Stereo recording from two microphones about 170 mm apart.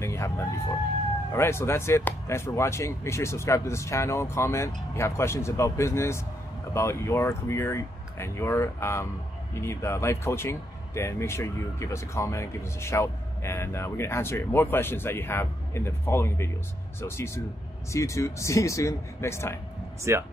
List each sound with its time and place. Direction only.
0.0 s vehicle: 15° left (ahead or behind)
1.3 s speech: 15° left (ahead or behind)
20.0 s speech: 15° right (ahead or behind)